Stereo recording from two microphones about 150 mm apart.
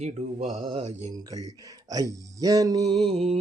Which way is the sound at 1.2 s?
25° right (ahead or behind).